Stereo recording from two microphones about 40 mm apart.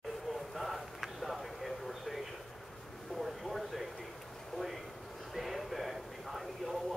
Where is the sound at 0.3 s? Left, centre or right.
Centre.